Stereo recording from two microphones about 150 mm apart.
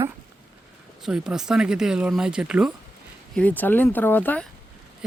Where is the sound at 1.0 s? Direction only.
5° right (ahead or behind).